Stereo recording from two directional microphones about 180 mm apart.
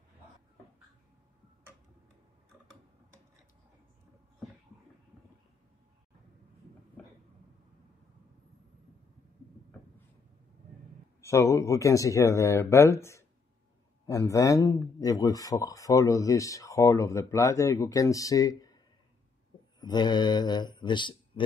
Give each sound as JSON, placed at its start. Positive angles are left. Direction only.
{"t": 11.1, "sound": "speech", "side_deg": 15}
{"t": 19.8, "sound": "speech", "side_deg": 25}